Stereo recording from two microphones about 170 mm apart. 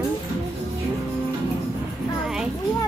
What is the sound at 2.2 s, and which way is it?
Children playing, 5° right (ahead or behind).